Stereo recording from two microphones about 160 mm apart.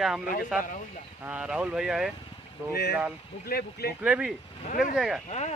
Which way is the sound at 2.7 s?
85° left.